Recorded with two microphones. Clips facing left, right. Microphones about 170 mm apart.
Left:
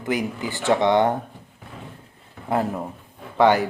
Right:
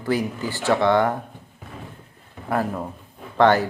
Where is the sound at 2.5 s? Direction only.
20° left (ahead or behind).